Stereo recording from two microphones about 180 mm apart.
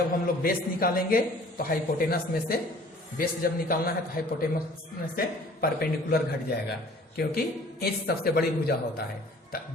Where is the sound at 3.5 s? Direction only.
55° left (ahead or behind).